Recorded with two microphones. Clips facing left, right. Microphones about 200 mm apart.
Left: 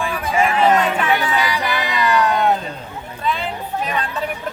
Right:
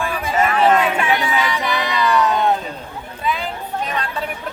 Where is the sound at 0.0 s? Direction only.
10° left (ahead or behind).